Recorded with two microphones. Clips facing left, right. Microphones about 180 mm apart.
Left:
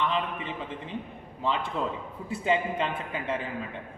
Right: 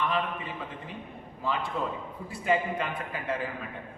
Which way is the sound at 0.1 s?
25° left (ahead or behind).